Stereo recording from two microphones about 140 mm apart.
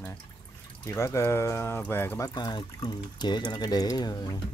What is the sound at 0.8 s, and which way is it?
Speech, 20° left (ahead or behind).